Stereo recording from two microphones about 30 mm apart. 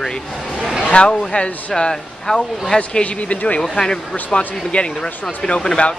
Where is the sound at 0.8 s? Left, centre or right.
Left.